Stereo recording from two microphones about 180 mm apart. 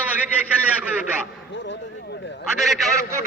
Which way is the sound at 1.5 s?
80° left.